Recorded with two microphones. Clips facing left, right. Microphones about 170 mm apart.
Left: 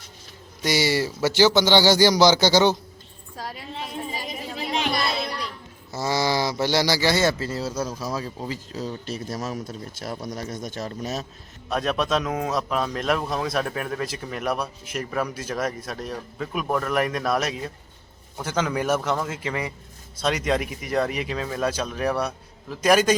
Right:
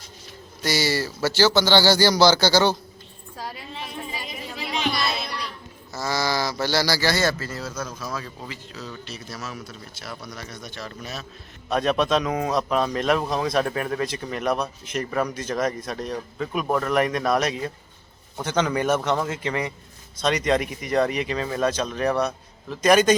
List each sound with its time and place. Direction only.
0.6 s speech: 25° left (ahead or behind)
4.6 s music: 40° left (ahead or behind)
5.9 s speech: 25° left (ahead or behind)
11.7 s a man's voice: centre (ahead or behind)